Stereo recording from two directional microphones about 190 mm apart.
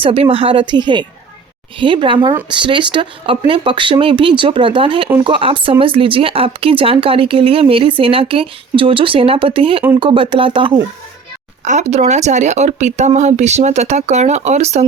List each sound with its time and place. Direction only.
0.0 s speech: 30° right (ahead or behind)
11.6 s speech: 40° right (ahead or behind)